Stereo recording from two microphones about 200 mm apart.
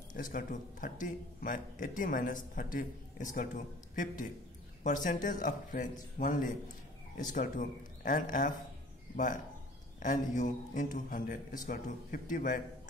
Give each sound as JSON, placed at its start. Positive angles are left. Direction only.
{"t": 0.1, "sound": "speech", "side_deg": 40}